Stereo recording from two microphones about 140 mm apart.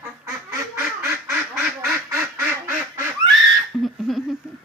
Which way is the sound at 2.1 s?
20° right (ahead or behind).